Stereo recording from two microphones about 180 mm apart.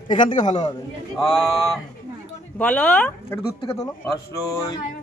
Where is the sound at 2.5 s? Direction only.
5° left (ahead or behind).